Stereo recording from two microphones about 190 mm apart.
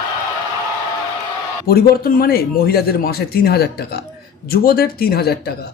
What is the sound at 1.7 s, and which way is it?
A man's voice, 50° left (ahead or behind).